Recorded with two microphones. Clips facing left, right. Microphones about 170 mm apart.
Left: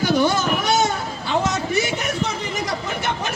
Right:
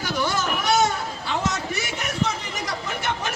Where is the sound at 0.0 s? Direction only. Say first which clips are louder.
Left 7 dB; 20° left (ahead or behind).